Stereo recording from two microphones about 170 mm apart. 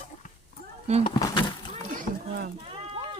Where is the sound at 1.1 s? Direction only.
25° left (ahead or behind).